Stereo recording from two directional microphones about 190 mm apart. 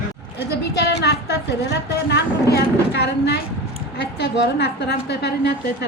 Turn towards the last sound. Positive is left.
turn(degrees=60)  # may be behind; listen again after turning